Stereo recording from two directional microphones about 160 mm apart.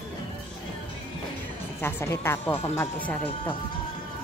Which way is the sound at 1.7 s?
15° left (ahead or behind).